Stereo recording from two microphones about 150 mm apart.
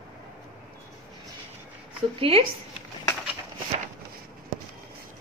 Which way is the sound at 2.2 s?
35° right (ahead or behind).